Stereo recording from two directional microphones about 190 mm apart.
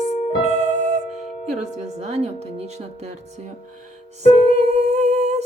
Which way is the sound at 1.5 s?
35° right (ahead or behind).